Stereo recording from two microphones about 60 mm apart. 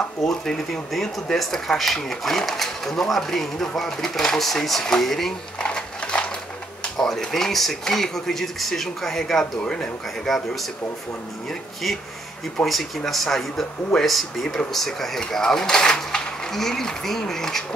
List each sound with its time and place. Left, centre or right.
0.3 s speech: centre
5.6 s sewing machine: centre
6.8 s speech: centre
10.2 s speech: centre
12.6 s speech: centre